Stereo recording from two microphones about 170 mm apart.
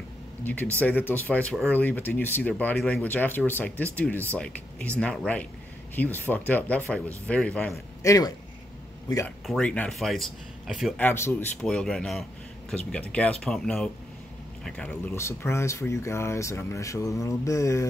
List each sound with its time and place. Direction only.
0.4 s speech: 10° left (ahead or behind)
8.0 s a man's voice: 20° left (ahead or behind)
9.5 s speech: 5° left (ahead or behind)
11.0 s speech: 15° left (ahead or behind)